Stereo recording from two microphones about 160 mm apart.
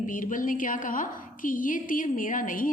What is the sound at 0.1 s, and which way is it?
A woman's voice, 55° left (ahead or behind).